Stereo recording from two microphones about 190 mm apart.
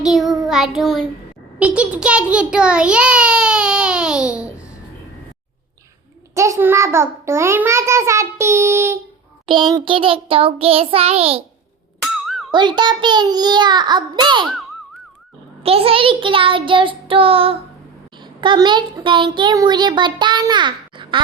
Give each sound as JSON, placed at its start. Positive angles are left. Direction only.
{"t": 0.0, "sound": "child singing", "side_deg": 0}
{"t": 1.5, "sound": "a child's voice", "side_deg": -5}
{"t": 6.3, "sound": "a child's voice", "side_deg": -15}
{"t": 9.5, "sound": "a child's voice", "side_deg": -25}
{"t": 12.5, "sound": "a child's voice", "side_deg": -25}
{"t": 15.6, "sound": "a child's voice", "side_deg": -30}